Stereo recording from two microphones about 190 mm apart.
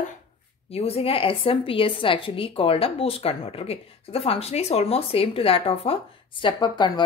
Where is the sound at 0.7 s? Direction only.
30° left (ahead or behind).